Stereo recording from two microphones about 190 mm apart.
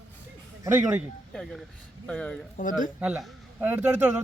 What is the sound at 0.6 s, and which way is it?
Speech, 15° right (ahead or behind).